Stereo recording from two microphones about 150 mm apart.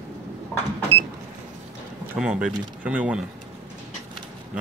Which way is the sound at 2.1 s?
5° right (ahead or behind).